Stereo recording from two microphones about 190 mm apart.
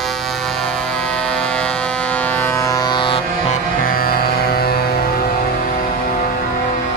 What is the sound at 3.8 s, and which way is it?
Music, 50° left (ahead or behind).